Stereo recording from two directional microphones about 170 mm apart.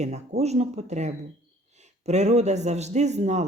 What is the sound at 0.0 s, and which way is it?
A man's voice, 40° right (ahead or behind).